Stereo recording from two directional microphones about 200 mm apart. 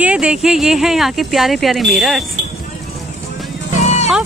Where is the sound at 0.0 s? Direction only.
5° right (ahead or behind).